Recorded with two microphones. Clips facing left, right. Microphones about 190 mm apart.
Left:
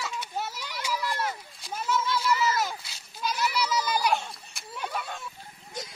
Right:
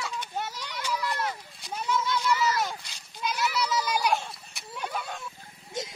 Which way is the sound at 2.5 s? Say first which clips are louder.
Even; 5° left (ahead or behind).